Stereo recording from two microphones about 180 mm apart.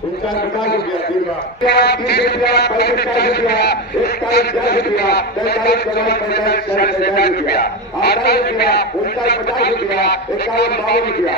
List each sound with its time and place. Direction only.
1.7 s a man's voice: 65° left (ahead or behind)